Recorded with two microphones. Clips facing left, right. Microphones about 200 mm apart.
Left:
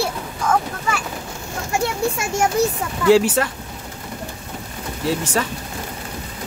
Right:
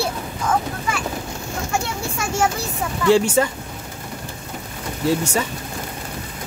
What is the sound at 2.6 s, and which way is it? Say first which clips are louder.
Speech: left 11 dB; 20° left (ahead or behind).